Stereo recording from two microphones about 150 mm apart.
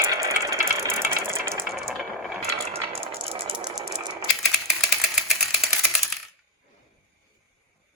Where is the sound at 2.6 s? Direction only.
40° right (ahead or behind).